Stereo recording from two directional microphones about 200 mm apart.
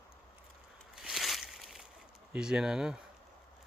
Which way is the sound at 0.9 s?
Centre (ahead or behind).